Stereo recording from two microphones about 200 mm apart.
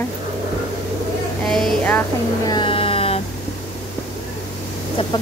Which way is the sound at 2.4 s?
25° left (ahead or behind).